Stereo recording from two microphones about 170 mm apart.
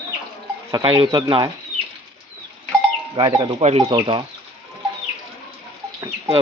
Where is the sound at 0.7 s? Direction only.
25° right (ahead or behind).